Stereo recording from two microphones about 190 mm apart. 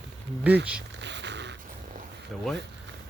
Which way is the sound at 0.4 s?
5° right (ahead or behind).